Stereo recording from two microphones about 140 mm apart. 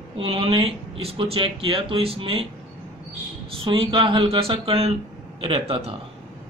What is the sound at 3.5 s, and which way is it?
A man's voice, 40° right (ahead or behind).